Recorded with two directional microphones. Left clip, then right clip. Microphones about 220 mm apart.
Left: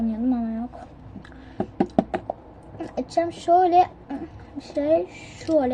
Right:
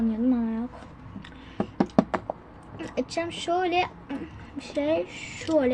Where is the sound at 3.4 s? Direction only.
15° right (ahead or behind).